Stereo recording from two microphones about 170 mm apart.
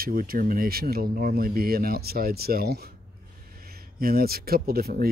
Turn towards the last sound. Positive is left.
turn(degrees=-60)  # may be behind; listen again after turning